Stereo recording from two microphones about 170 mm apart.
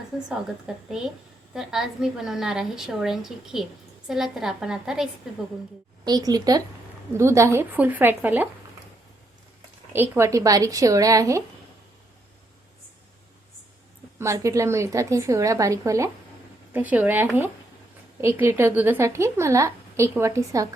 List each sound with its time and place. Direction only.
0.7 s a woman's voice: 5° right (ahead or behind)
6.1 s a woman's voice: 25° right (ahead or behind)
9.9 s speech: 15° right (ahead or behind)
14.2 s a woman's voice: 15° right (ahead or behind)